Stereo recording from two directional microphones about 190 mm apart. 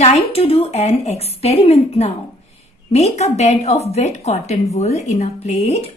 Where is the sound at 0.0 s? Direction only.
35° left (ahead or behind).